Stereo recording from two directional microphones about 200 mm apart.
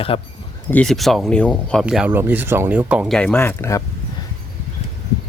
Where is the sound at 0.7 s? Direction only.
5° left (ahead or behind).